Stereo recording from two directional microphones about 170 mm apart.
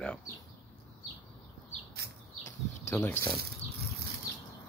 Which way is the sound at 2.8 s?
15° left (ahead or behind).